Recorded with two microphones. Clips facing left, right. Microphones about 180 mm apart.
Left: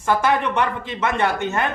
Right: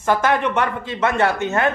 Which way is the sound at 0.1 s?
15° left (ahead or behind).